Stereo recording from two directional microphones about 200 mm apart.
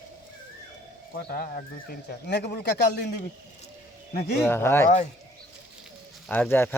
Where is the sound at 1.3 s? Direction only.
50° left (ahead or behind).